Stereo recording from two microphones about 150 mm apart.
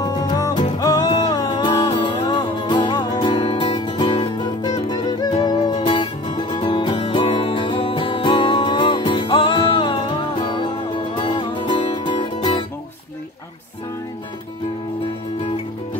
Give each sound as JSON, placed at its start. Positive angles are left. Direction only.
{"t": 0.0, "sound": "music", "side_deg": 25}